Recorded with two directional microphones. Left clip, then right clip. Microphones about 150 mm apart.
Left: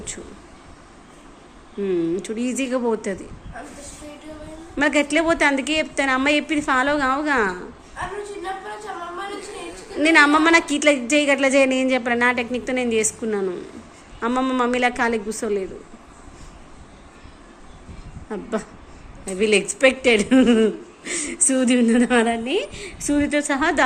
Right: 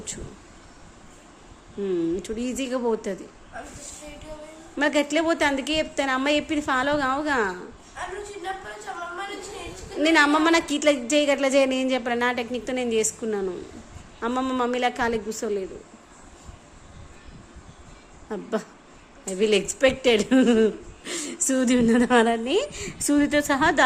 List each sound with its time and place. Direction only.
1.8 s a woman's voice: 15° right (ahead or behind)
4.8 s a woman's voice: 15° right (ahead or behind)
9.6 s a woman's voice: 15° right (ahead or behind)
18.3 s a woman's voice: 20° right (ahead or behind)